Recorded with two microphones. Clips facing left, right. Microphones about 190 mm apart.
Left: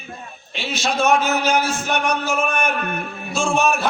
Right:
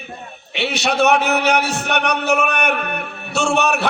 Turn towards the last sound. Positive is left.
turn(degrees=-70)  # may be behind; listen again after turning